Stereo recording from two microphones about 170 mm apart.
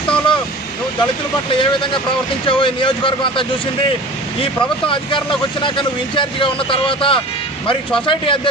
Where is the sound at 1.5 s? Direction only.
30° left (ahead or behind).